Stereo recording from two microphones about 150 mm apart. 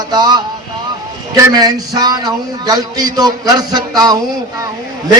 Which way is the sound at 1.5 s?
25° right (ahead or behind).